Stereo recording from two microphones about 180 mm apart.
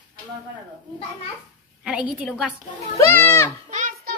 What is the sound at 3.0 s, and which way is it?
Speech, 10° left (ahead or behind).